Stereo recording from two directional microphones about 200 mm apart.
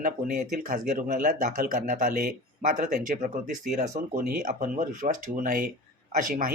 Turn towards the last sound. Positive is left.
turn(degrees=-40)  # may be behind; listen again after turning